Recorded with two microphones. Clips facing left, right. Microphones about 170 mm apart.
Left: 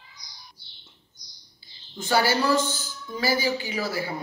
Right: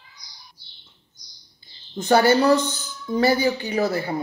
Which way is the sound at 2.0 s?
50° right (ahead or behind).